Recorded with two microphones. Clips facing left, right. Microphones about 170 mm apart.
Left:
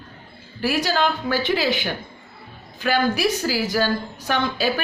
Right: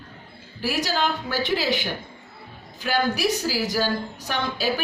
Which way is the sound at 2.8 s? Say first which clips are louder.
Left 3 dB; 60° left (ahead or behind).